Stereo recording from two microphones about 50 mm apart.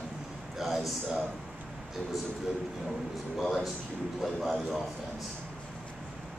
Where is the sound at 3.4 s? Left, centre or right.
Centre.